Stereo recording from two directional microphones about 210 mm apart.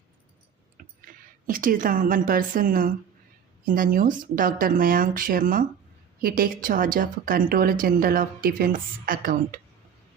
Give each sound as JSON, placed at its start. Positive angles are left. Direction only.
{"t": 0.8, "sound": "a woman's voice", "side_deg": -40}